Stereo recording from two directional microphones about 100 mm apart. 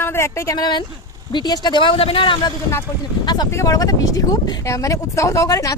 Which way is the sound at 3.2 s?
45° left (ahead or behind).